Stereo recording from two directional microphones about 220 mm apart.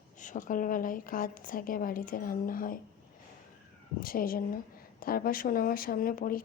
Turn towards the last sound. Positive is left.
turn(degrees=40)  # may be behind; listen again after turning